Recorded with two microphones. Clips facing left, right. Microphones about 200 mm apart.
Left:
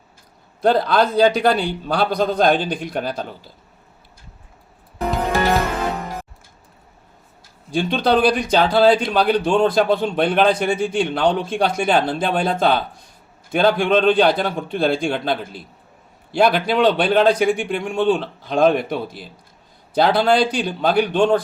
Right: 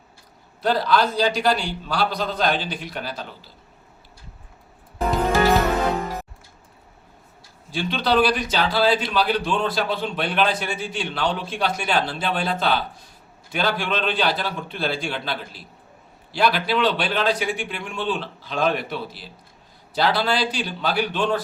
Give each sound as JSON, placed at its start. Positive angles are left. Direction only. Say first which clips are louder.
{"t": 0.6, "sound": "speech", "louder": "left 4 dB", "side_deg": 55}
{"t": 7.7, "sound": "speech", "louder": "left 4 dB", "side_deg": 50}